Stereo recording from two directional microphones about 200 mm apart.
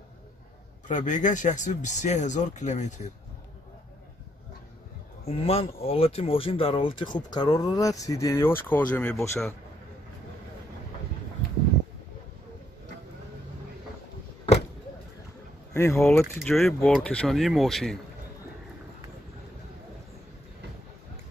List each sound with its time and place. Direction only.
0.8 s speech: 40° left (ahead or behind)
5.2 s speech: 30° left (ahead or behind); by 9.4 s 10° left (ahead or behind)
15.7 s speech: 15° left (ahead or behind)